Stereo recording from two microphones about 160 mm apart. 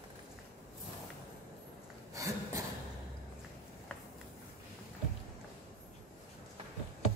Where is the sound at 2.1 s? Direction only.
20° right (ahead or behind).